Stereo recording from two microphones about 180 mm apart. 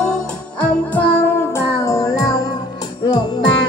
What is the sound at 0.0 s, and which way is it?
Music, 5° left (ahead or behind).